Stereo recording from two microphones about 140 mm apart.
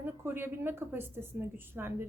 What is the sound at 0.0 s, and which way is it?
A woman's voice, 15° right (ahead or behind).